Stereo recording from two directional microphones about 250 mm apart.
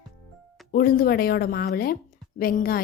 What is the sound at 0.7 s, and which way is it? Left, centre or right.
A woman's voice, left.